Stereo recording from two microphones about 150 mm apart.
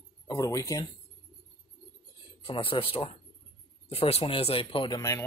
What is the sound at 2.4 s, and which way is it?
Speech, 35° left (ahead or behind).